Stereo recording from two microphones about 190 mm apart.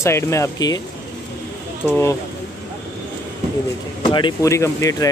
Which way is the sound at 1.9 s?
10° left (ahead or behind).